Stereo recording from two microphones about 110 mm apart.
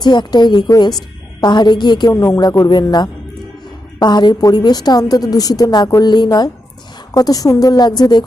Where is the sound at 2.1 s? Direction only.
30° left (ahead or behind).